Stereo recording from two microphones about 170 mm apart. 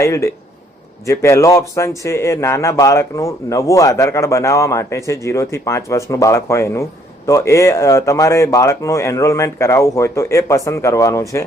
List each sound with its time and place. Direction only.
0.0 s a man's voice: 15° left (ahead or behind)